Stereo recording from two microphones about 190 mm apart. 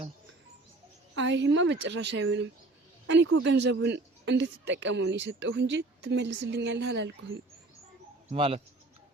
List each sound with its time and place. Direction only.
1.1 s speech: 70° right (ahead or behind)
8.3 s speech: 30° right (ahead or behind)